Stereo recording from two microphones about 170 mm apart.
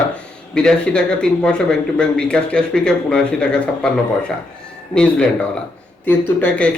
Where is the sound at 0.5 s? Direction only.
5° left (ahead or behind).